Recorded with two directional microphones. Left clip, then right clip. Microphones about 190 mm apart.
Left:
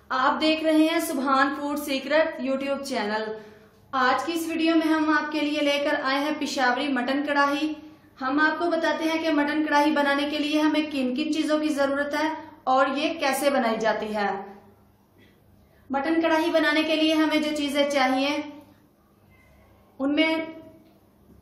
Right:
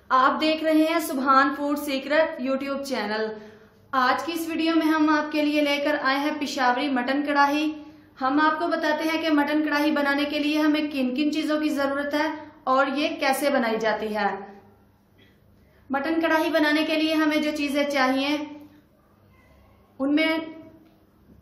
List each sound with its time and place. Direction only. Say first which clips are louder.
0.1 s a woman's voice: right 2 dB; 30° right (ahead or behind)
8.2 s a woman's voice: right 1 dB; 35° right (ahead or behind); by 14.2 s 20° right (ahead or behind)
15.9 s a woman's voice: even; 30° right (ahead or behind)